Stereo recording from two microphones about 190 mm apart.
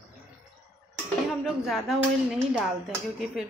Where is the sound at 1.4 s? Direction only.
Centre (ahead or behind).